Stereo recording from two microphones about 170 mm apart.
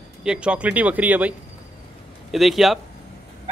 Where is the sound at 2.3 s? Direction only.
Centre (ahead or behind).